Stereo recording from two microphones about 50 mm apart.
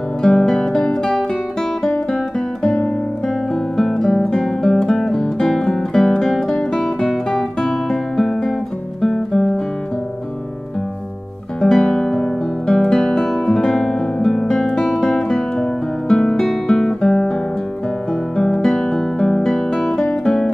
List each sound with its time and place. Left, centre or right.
0.2 s guitar: centre
3.7 s music: centre
7.0 s guitar: centre
11.6 s guitar: centre
15.6 s music: centre
16.6 s guitar: centre